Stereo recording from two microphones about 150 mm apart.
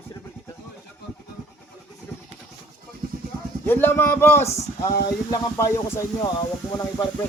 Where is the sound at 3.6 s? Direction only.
15° left (ahead or behind).